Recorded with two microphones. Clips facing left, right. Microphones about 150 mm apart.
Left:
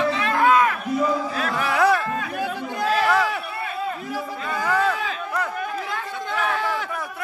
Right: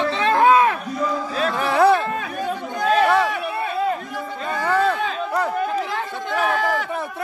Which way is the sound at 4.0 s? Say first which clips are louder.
Left 1 dB; 5° left (ahead or behind).